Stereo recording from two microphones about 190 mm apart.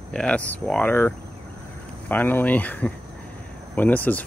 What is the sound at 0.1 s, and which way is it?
Speech, 5° left (ahead or behind).